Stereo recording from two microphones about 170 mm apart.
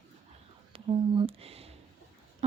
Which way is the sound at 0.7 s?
30° right (ahead or behind).